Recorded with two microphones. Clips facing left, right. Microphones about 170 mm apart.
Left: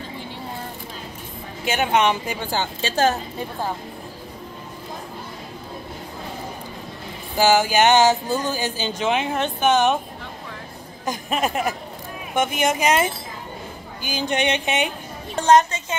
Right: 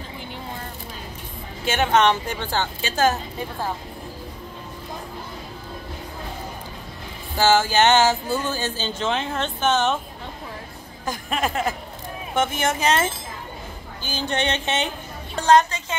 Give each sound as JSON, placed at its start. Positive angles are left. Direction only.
{"t": 1.6, "sound": "speech", "side_deg": 15}
{"t": 2.8, "sound": "a woman's voice", "side_deg": 30}
{"t": 7.3, "sound": "speech", "side_deg": 15}
{"t": 11.1, "sound": "speech", "side_deg": 20}